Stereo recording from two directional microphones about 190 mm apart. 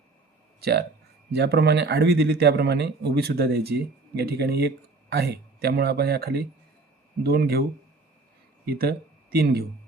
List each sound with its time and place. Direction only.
0.6 s speech: 60° right (ahead or behind)
8.6 s speech: 55° right (ahead or behind)